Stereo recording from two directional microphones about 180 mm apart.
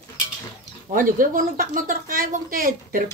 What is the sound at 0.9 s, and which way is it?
A woman's voice, 50° right (ahead or behind).